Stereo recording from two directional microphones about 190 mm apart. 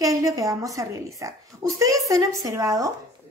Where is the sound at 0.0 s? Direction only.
20° right (ahead or behind).